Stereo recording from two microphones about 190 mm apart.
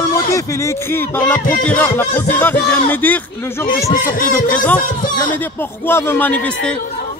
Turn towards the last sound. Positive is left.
turn(degrees=10)  # may be behind; listen again after turning